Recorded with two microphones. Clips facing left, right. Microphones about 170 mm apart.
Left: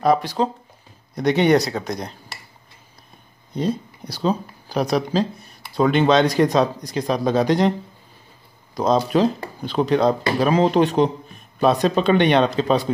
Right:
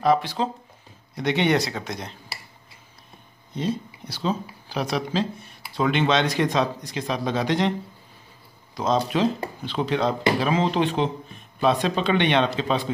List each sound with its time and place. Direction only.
0.0 s speech: 40° left (ahead or behind)
3.5 s speech: 40° left (ahead or behind)
8.7 s speech: 40° left (ahead or behind)